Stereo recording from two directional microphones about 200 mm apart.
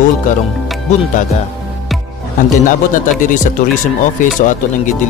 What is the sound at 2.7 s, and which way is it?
Speech, 40° left (ahead or behind).